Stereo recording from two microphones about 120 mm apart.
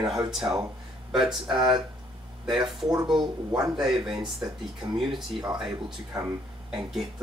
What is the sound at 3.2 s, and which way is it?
Speech, 35° right (ahead or behind).